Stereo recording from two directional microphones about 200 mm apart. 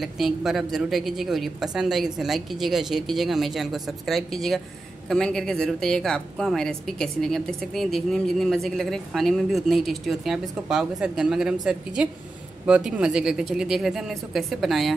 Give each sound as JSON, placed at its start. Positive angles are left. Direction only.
{"t": 0.0, "sound": "a woman's voice", "side_deg": 0}